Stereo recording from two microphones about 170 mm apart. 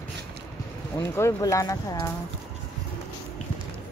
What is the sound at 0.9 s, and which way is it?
Speech, 15° left (ahead or behind).